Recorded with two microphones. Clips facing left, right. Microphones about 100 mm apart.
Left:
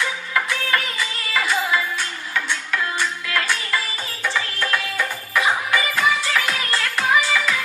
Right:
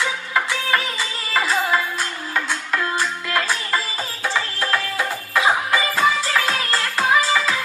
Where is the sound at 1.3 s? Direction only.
35° right (ahead or behind).